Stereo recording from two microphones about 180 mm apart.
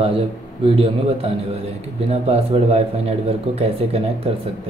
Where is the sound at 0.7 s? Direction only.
30° right (ahead or behind).